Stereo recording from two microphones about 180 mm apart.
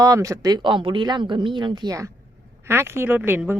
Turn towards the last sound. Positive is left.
turn(degrees=-10)  # may be behind; listen again after turning